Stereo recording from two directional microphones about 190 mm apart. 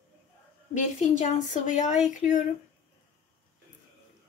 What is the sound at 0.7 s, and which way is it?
Speech, 40° left (ahead or behind).